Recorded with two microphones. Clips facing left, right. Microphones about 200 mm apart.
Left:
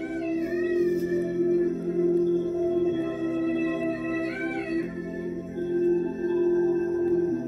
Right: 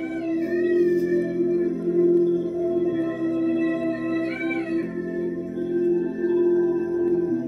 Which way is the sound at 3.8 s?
65° right (ahead or behind).